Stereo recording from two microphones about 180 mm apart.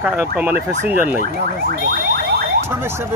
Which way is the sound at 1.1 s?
55° right (ahead or behind).